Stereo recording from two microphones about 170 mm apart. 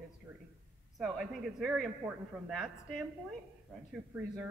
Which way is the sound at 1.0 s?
Centre (ahead or behind).